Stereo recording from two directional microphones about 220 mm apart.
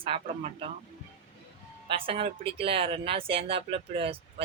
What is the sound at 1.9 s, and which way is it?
Speech, 25° right (ahead or behind).